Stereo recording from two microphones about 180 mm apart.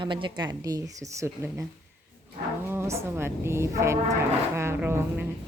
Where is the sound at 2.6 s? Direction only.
15° right (ahead or behind).